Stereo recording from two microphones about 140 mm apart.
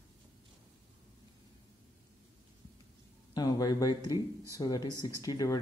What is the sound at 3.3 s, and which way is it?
Speech, 25° left (ahead or behind).